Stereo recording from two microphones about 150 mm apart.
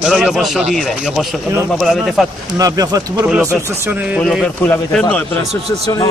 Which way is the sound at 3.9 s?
10° right (ahead or behind).